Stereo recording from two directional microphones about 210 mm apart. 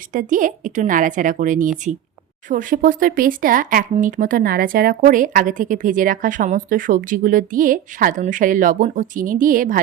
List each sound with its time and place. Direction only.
0.1 s speech: 40° right (ahead or behind)